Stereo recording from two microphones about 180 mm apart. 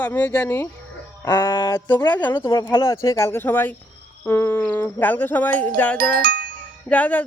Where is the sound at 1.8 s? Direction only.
25° left (ahead or behind).